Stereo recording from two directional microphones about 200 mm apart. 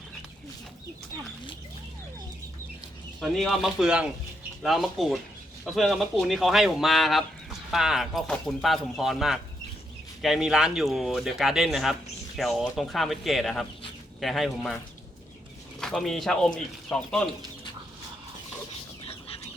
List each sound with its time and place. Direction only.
3.2 s speech: centre (ahead or behind)
15.8 s speech: centre (ahead or behind)
18.7 s pig: 30° left (ahead or behind)